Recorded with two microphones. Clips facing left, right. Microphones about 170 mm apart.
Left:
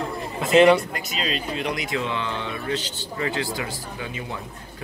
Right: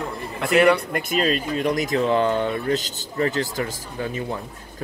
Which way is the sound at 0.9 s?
50° right (ahead or behind).